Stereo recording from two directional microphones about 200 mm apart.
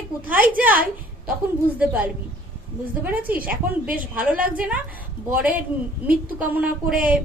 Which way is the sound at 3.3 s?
45° right (ahead or behind).